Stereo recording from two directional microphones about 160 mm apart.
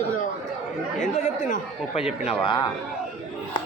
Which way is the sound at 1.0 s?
55° left (ahead or behind).